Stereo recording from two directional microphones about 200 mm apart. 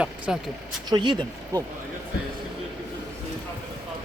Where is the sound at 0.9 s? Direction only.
25° right (ahead or behind).